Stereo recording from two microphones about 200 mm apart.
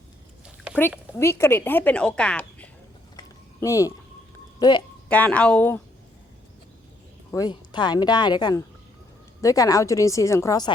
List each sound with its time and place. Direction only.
0.7 s speech: 10° left (ahead or behind)
3.2 s a sound: 15° left (ahead or behind)
5.0 s speech: 5° left (ahead or behind)
7.3 s speech: 20° left (ahead or behind)